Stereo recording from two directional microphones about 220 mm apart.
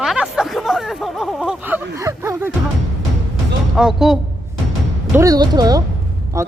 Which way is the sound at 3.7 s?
Centre (ahead or behind).